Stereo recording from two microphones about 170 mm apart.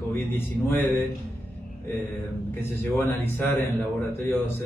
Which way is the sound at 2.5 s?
15° left (ahead or behind).